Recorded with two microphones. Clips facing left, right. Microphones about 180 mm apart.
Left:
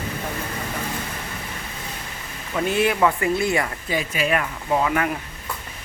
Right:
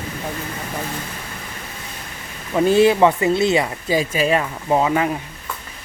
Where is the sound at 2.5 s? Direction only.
30° right (ahead or behind).